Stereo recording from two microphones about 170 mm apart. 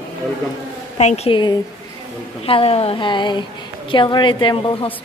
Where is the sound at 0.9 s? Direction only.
40° left (ahead or behind).